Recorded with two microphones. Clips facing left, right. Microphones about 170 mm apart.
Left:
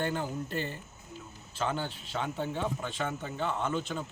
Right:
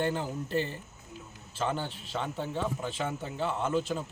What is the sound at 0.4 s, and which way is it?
Speech, 30° right (ahead or behind).